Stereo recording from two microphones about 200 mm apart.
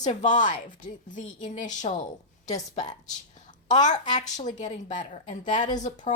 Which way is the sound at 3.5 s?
40° left (ahead or behind).